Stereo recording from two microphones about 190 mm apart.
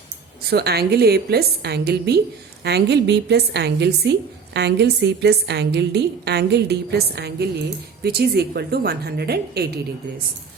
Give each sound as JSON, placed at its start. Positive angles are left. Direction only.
{"t": 0.5, "sound": "a woman's voice", "side_deg": -55}